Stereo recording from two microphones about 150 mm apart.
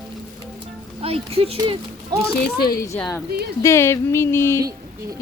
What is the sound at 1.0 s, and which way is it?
Speech, 40° right (ahead or behind).